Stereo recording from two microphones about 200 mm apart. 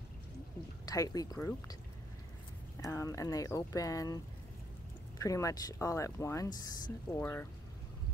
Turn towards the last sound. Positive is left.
turn(degrees=10)  # may be behind; listen again after turning